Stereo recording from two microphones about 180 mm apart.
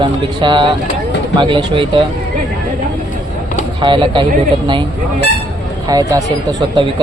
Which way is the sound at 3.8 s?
25° right (ahead or behind).